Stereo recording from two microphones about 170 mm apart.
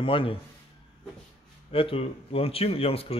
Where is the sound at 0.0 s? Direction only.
30° left (ahead or behind).